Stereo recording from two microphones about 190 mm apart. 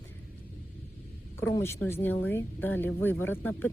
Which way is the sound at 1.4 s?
15° left (ahead or behind).